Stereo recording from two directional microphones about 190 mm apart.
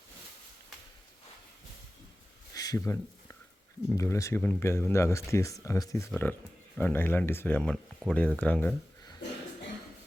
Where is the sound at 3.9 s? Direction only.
15° left (ahead or behind).